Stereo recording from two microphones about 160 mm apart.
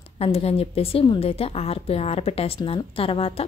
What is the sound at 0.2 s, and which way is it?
A woman's voice, 40° left (ahead or behind).